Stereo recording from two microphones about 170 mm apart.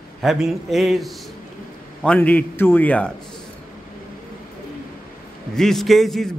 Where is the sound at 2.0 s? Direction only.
5° left (ahead or behind).